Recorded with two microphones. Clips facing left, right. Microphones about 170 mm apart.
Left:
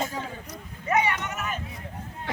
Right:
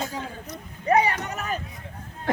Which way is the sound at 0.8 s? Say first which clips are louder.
Right 4 dB; 35° right (ahead or behind).